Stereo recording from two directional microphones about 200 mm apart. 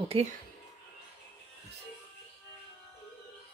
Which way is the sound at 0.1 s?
30° right (ahead or behind).